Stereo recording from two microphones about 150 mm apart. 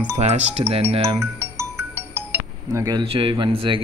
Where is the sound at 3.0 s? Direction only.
40° right (ahead or behind).